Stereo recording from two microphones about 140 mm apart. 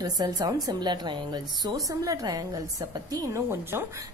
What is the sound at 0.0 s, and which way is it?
A woman's voice, 30° right (ahead or behind).